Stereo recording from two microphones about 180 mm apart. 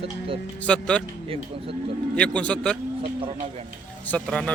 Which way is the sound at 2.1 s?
5° left (ahead or behind).